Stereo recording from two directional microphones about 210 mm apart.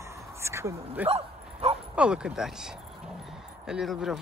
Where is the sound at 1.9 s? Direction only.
5° right (ahead or behind).